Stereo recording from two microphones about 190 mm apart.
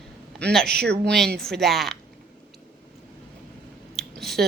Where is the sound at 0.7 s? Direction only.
60° right (ahead or behind).